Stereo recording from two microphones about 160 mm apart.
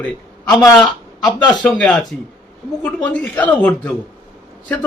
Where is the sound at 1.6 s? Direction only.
Centre (ahead or behind).